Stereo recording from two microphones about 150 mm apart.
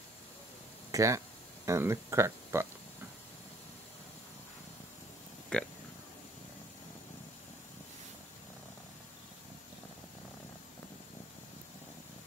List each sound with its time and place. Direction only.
0.9 s speech: 20° right (ahead or behind)
5.5 s speech: 5° left (ahead or behind)